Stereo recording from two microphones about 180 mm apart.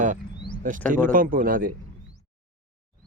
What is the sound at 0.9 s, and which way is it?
Speech, 50° right (ahead or behind).